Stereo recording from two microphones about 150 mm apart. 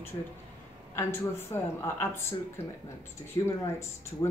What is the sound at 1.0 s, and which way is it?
A woman's voice, 15° left (ahead or behind).